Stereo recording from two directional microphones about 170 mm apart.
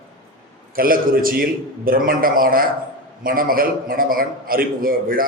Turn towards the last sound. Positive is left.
turn(degrees=-55)  # may be behind; listen again after turning